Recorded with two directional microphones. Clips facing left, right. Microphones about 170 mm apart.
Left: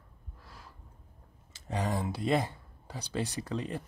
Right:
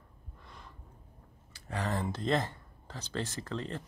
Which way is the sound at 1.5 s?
15° left (ahead or behind).